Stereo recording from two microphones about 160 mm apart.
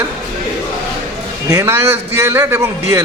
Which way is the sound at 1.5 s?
15° right (ahead or behind).